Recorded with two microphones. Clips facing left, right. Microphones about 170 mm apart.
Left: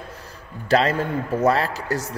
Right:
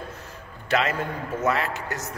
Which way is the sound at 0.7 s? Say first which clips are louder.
Left 5 dB; 35° left (ahead or behind).